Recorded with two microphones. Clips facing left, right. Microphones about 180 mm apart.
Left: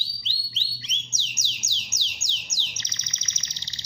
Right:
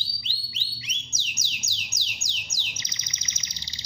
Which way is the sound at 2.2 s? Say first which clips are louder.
Even; 10° right (ahead or behind).